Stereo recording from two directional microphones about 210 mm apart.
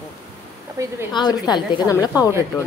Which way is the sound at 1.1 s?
20° left (ahead or behind).